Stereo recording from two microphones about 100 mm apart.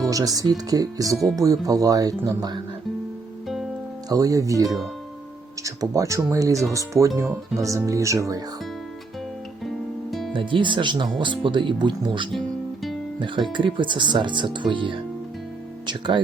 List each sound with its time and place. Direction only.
0.0 s speech: 35° right (ahead or behind)
4.1 s speech: 35° right (ahead or behind)
9.6 s music: centre (ahead or behind)
10.3 s speech: 55° right (ahead or behind)
12.3 s music: centre (ahead or behind)
13.1 s speech: 55° right (ahead or behind)